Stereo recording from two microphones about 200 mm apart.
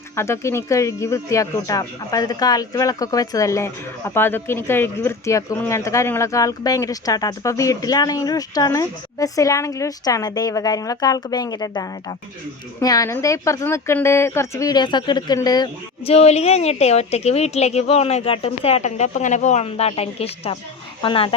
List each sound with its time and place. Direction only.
0.2 s a woman's voice: 15° left (ahead or behind)